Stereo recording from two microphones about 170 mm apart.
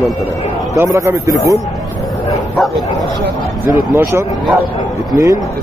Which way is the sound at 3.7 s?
10° right (ahead or behind).